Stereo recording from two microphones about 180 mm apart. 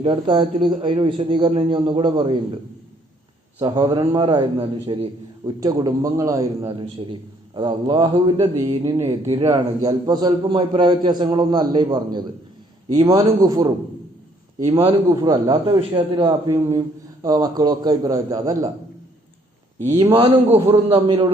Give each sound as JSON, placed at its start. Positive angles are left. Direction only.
{"t": 0.0, "sound": "a man's voice", "side_deg": -25}
{"t": 3.6, "sound": "a man's voice", "side_deg": -25}
{"t": 8.4, "sound": "a man's voice", "side_deg": -15}
{"t": 15.1, "sound": "a man's voice", "side_deg": -20}
{"t": 19.8, "sound": "a man's voice", "side_deg": -35}